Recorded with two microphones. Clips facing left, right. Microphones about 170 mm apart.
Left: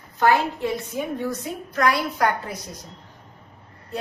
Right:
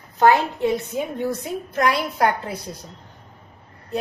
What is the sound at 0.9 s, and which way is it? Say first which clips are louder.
A woman's voice: right 2 dB; 25° right (ahead or behind).